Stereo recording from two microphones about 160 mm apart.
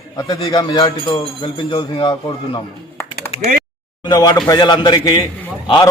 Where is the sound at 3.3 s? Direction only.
40° left (ahead or behind).